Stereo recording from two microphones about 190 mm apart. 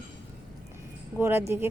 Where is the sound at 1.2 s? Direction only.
15° right (ahead or behind).